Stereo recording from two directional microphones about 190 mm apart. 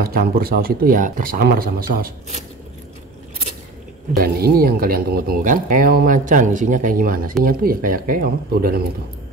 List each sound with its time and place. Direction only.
0.0 s speech: 50° right (ahead or behind)
4.2 s speech: 55° right (ahead or behind)